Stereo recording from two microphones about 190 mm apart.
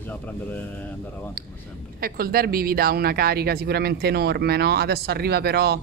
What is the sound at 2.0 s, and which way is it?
Speech, 50° right (ahead or behind).